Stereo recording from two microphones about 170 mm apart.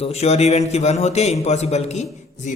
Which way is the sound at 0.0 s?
40° left (ahead or behind).